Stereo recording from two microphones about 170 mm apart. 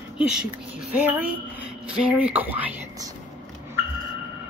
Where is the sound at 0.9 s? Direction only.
10° right (ahead or behind).